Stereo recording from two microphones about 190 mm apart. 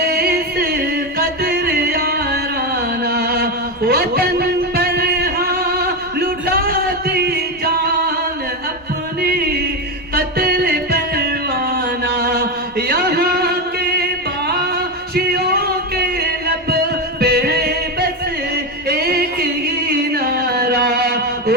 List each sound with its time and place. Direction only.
0.0 s music: 55° right (ahead or behind)
9.2 s music: 55° right (ahead or behind)